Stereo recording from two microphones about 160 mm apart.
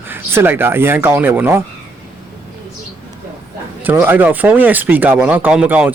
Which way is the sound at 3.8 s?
10° right (ahead or behind).